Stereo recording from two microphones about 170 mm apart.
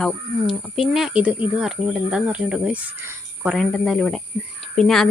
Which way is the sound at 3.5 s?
Centre (ahead or behind).